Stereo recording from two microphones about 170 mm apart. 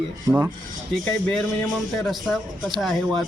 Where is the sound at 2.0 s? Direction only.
Centre (ahead or behind).